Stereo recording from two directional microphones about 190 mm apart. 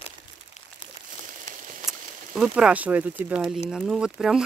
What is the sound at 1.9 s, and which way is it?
Speech, 5° right (ahead or behind).